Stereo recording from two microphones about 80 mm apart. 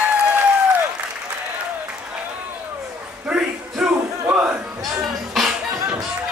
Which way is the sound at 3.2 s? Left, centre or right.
Centre.